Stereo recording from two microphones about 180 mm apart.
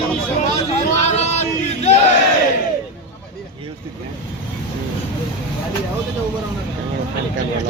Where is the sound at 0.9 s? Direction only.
40° left (ahead or behind).